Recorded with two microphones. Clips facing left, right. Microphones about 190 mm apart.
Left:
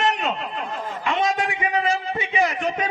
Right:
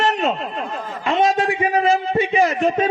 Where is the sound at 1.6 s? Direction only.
40° right (ahead or behind).